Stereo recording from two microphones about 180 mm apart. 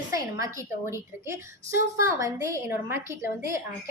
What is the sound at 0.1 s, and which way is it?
A woman's voice, 15° right (ahead or behind).